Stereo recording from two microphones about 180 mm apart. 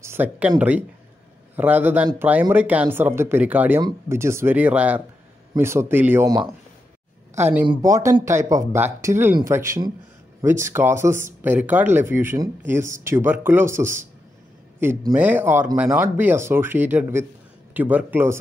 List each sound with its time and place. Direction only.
0.0 s speech: 10° right (ahead or behind)
7.6 s speech: 20° right (ahead or behind)